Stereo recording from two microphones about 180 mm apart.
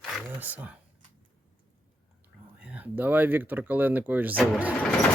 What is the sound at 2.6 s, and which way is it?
Speech, 5° right (ahead or behind).